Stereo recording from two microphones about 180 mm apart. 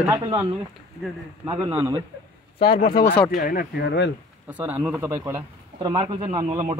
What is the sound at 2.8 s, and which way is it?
Speech, 60° left (ahead or behind).